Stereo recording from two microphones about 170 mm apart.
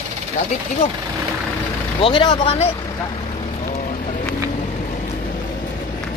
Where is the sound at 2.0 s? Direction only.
30° left (ahead or behind).